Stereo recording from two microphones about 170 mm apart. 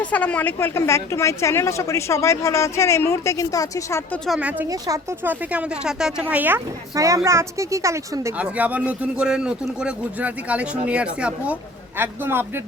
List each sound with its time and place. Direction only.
0.1 s a woman's voice: 10° left (ahead or behind)
4.3 s speech: 5° right (ahead or behind)